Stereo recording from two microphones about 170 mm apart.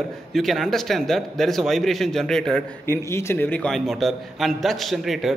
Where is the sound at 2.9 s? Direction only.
15° left (ahead or behind); by 5.3 s centre (ahead or behind).